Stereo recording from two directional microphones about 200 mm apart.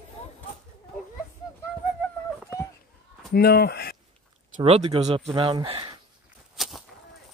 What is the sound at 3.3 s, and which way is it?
Speech, 50° left (ahead or behind).